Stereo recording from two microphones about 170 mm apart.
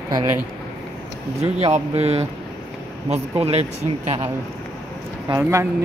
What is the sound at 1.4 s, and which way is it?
Speech, 35° right (ahead or behind).